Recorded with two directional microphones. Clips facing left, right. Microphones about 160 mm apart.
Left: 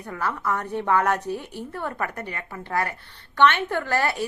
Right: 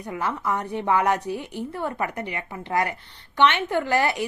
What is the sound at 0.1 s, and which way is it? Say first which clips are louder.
A woman's voice: even; 15° right (ahead or behind).